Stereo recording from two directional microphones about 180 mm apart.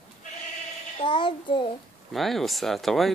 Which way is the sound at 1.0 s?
25° left (ahead or behind).